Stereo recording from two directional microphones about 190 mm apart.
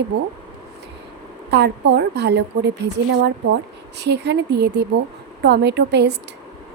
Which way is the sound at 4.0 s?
60° right (ahead or behind).